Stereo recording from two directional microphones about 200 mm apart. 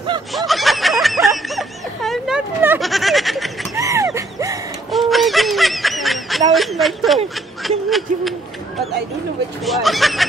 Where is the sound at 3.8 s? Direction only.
15° right (ahead or behind).